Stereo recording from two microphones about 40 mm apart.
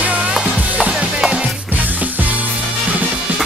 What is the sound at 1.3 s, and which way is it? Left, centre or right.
Music, right.